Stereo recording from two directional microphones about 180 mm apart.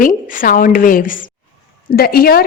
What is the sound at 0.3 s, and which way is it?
A woman's voice, 50° left (ahead or behind).